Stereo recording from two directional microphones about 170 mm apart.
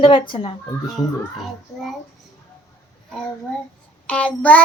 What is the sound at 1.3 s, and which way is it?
Speech, centre (ahead or behind).